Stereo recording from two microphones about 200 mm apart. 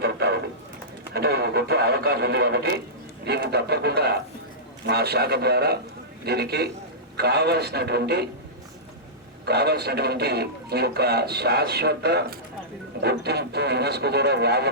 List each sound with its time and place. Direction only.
0.0 s a sound: 50° right (ahead or behind)
1.1 s speech: 55° right (ahead or behind)
9.5 s speech: 55° right (ahead or behind)